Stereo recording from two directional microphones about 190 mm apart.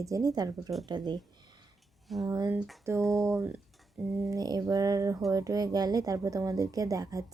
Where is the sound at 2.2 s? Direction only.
20° right (ahead or behind).